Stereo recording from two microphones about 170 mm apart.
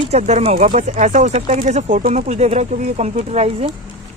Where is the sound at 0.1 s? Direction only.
40° right (ahead or behind).